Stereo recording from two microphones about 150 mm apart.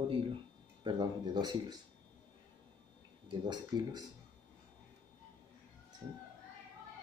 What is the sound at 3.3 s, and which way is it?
Speech, 30° right (ahead or behind).